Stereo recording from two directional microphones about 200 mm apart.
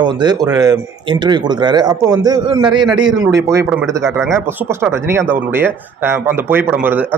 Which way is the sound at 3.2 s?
15° right (ahead or behind).